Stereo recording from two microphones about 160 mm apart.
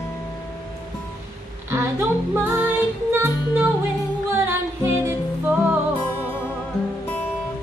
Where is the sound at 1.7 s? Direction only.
15° right (ahead or behind).